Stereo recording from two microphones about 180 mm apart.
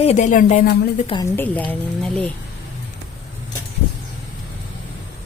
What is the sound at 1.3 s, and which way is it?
Speech, 10° left (ahead or behind).